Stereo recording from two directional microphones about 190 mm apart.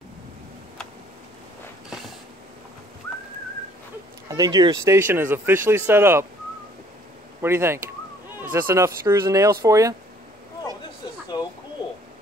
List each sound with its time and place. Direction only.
4.3 s speech: 20° right (ahead or behind)
7.4 s speech: 10° right (ahead or behind)
11.3 s a sound: 20° left (ahead or behind)